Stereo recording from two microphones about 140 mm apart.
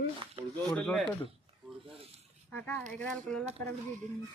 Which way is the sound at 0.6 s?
5° left (ahead or behind).